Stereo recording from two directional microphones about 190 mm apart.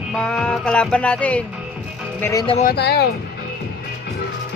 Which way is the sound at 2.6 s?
60° left (ahead or behind).